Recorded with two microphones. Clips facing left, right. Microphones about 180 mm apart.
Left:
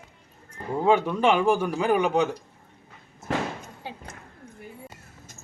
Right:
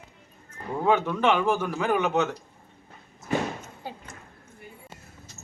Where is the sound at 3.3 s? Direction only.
90° left.